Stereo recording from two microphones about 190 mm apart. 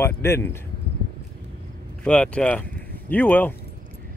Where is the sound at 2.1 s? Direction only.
5° left (ahead or behind).